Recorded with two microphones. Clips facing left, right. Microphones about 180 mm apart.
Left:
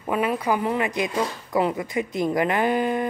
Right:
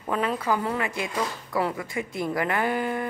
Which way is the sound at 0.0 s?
10° left (ahead or behind).